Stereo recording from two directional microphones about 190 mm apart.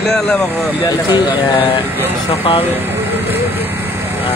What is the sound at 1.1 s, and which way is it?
Speech, 25° left (ahead or behind).